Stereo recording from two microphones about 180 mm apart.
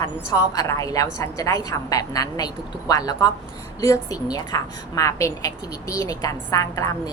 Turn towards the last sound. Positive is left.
turn(degrees=20)  # may be behind; listen again after turning